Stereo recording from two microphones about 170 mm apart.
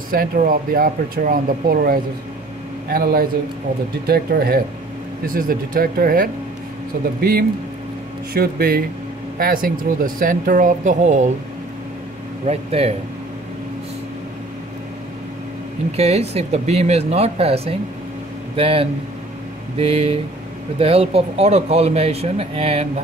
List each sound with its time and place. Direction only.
0.1 s speech: 55° right (ahead or behind)
5.2 s speech: 55° right (ahead or behind)
12.4 s speech: 35° right (ahead or behind)
16.0 s speech: 40° right (ahead or behind)